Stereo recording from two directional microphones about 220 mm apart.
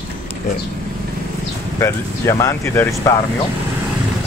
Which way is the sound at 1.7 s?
10° left (ahead or behind).